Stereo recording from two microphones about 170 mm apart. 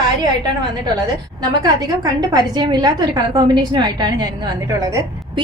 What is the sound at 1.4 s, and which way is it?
A woman's voice, 25° right (ahead or behind).